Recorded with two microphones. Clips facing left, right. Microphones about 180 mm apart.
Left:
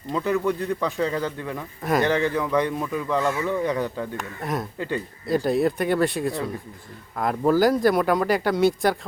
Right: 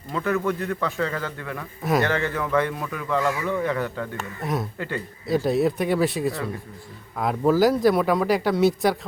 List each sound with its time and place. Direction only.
0.1 s speech: 15° left (ahead or behind)
1.8 s speech: centre (ahead or behind)
2.0 s speech: 15° left (ahead or behind)
5.2 s speech: centre (ahead or behind)